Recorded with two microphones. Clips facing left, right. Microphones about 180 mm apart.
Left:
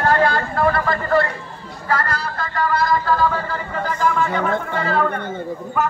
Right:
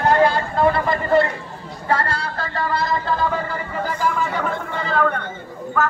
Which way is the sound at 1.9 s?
30° right (ahead or behind).